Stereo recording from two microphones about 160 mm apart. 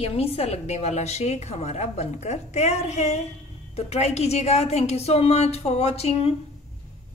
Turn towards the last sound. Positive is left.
turn(degrees=35)  # may be behind; listen again after turning